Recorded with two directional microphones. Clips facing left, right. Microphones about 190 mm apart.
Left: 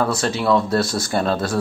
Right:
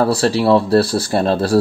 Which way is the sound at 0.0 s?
35° right (ahead or behind).